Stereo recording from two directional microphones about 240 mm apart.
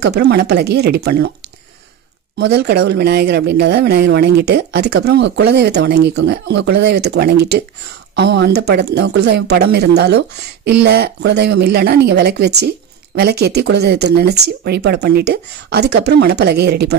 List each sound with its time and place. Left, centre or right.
0.0 s speech: right
2.3 s speech: right